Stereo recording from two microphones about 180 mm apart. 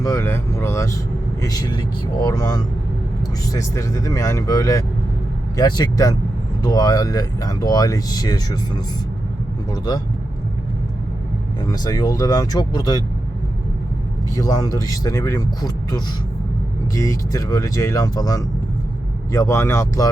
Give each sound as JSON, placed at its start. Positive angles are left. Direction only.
{"t": 0.0, "sound": "speech", "side_deg": 15}
{"t": 11.7, "sound": "speech", "side_deg": 20}
{"t": 14.3, "sound": "speech", "side_deg": 20}